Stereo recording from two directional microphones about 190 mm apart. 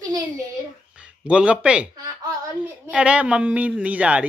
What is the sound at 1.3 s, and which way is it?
Speech, 5° right (ahead or behind).